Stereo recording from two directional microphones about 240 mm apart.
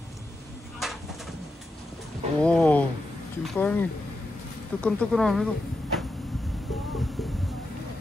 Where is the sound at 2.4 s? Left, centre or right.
Centre.